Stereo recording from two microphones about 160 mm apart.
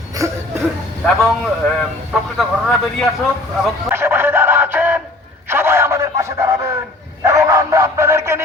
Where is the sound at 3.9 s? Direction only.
15° right (ahead or behind).